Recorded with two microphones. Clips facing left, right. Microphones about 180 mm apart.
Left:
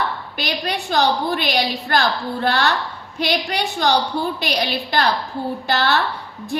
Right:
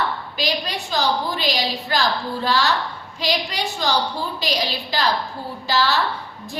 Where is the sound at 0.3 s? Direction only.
60° left (ahead or behind).